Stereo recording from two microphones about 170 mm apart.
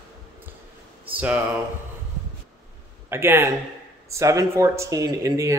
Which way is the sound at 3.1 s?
15° right (ahead or behind).